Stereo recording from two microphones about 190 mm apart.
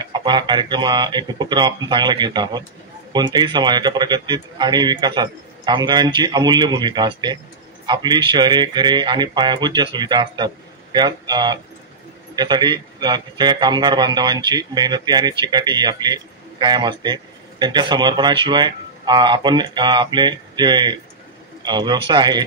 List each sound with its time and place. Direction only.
0.0 s a man's voice: 25° right (ahead or behind)